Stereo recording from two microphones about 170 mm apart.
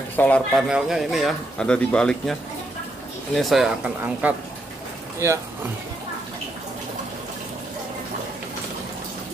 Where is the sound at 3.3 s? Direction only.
Centre (ahead or behind).